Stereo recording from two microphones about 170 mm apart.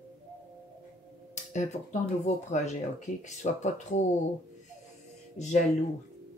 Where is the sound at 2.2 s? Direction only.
45° left (ahead or behind).